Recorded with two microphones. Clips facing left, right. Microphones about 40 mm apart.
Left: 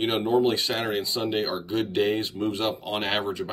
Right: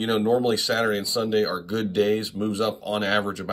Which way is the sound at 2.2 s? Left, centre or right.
Left.